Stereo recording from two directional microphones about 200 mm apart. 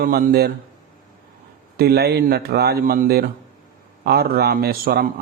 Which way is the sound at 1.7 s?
50° right (ahead or behind).